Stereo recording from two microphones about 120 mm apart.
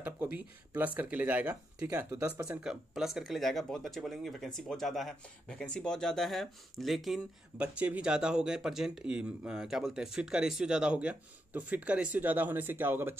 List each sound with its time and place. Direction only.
0.0 s speech: 15° right (ahead or behind)
2.6 s speech: 5° right (ahead or behind)